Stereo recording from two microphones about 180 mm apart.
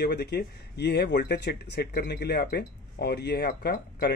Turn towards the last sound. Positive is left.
turn(degrees=60)  # may be behind; listen again after turning